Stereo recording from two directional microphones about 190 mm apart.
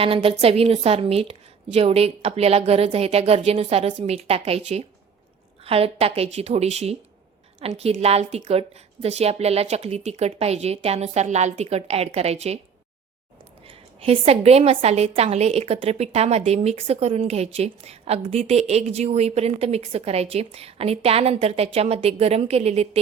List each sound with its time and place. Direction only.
0.0 s a woman's voice: 30° right (ahead or behind)
13.7 s a woman's voice: 30° right (ahead or behind)